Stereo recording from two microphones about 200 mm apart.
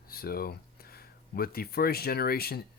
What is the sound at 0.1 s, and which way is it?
Speech, 50° left (ahead or behind).